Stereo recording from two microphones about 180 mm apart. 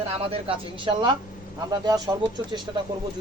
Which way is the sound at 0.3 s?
30° right (ahead or behind).